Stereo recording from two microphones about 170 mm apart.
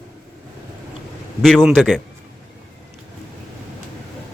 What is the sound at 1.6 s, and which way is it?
Speech, centre (ahead or behind).